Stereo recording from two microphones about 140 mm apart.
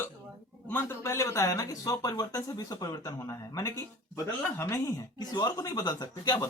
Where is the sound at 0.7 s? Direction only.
15° left (ahead or behind).